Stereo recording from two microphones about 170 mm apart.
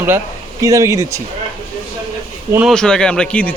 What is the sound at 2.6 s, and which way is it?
Speech, 5° left (ahead or behind).